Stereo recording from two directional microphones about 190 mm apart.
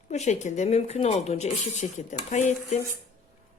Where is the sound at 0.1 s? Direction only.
35° left (ahead or behind).